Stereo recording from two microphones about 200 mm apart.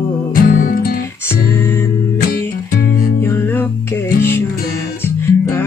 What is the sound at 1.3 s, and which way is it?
Music, 10° left (ahead or behind).